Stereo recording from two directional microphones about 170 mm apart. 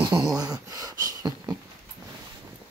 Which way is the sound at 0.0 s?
20° right (ahead or behind).